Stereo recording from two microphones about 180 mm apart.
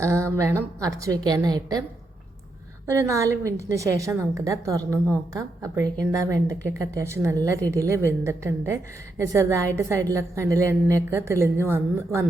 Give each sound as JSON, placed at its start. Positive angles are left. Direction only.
{"t": 0.0, "sound": "a woman's voice", "side_deg": -15}
{"t": 2.8, "sound": "a woman's voice", "side_deg": -15}